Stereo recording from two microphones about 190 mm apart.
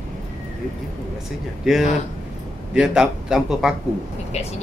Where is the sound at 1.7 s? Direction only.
5° right (ahead or behind).